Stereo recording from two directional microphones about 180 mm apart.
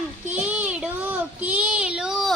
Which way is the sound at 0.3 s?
10° right (ahead or behind).